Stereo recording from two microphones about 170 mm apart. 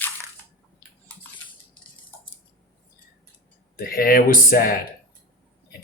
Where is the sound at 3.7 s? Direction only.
60° left (ahead or behind).